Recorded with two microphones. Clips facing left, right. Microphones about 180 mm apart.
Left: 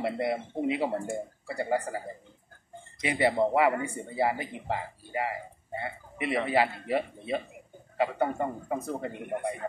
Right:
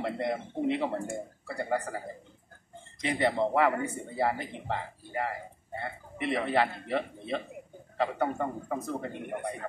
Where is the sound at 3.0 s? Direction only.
10° left (ahead or behind).